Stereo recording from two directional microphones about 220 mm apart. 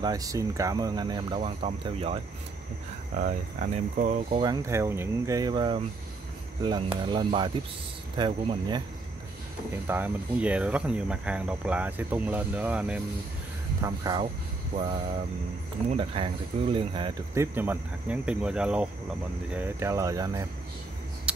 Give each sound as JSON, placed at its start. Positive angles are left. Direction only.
{"t": 0.0, "sound": "speech", "side_deg": -15}
{"t": 3.2, "sound": "speech", "side_deg": -35}
{"t": 4.3, "sound": "speech", "side_deg": -20}
{"t": 7.0, "sound": "speech", "side_deg": -20}
{"t": 9.8, "sound": "speech", "side_deg": -10}
{"t": 13.8, "sound": "speech", "side_deg": -15}
{"t": 15.9, "sound": "speech", "side_deg": -25}